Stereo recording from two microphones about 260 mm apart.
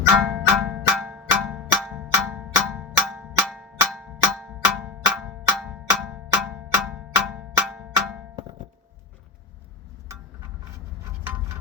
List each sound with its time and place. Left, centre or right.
0.2 s music: centre
3.4 s cowbell: centre